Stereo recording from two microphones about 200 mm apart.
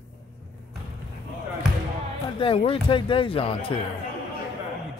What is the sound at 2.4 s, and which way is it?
Speech, 25° left (ahead or behind).